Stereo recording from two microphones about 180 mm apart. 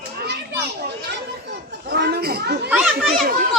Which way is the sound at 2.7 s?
5° right (ahead or behind).